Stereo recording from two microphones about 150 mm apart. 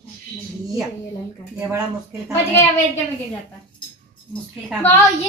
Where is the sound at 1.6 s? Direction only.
15° right (ahead or behind).